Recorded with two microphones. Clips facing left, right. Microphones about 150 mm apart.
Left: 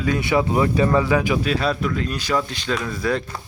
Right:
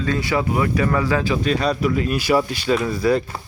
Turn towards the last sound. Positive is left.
turn(degrees=-5)  # may be behind; listen again after turning